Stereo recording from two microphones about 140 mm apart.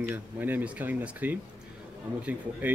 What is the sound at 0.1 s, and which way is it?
Speech, 15° right (ahead or behind).